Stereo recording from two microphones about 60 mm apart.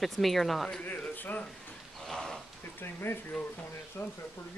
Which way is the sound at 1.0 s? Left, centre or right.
Left.